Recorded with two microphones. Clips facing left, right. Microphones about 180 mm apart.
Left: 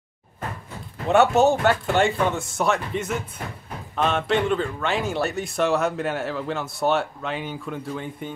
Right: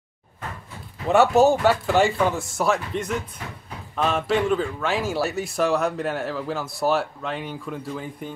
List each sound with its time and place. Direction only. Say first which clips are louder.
1.0 s a man's voice: right 1 dB; centre (ahead or behind)